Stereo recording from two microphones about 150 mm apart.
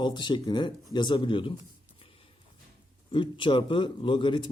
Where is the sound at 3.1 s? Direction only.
35° left (ahead or behind).